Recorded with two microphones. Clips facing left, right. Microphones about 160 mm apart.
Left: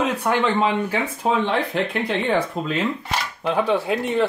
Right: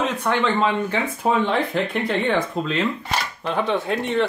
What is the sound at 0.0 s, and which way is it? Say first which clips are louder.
Speech: left 1 dB; 10° left (ahead or behind).